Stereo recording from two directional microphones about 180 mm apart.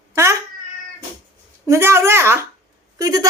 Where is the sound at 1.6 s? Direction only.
15° right (ahead or behind).